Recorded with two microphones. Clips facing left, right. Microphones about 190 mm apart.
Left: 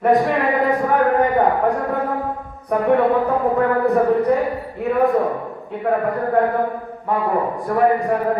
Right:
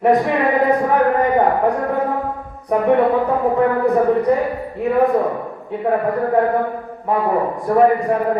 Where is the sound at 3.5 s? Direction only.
Centre (ahead or behind).